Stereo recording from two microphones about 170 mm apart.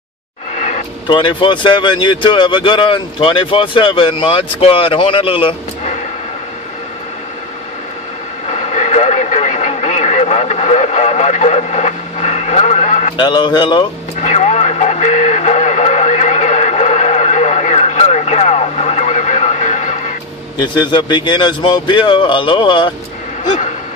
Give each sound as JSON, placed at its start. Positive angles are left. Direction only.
{"t": 0.6, "sound": "a sound", "side_deg": 45}
{"t": 1.0, "sound": "speech", "side_deg": 30}
{"t": 8.5, "sound": "radio", "side_deg": 40}
{"t": 13.2, "sound": "speech", "side_deg": 25}
{"t": 14.2, "sound": "radio", "side_deg": 40}
{"t": 20.5, "sound": "a man's voice", "side_deg": 25}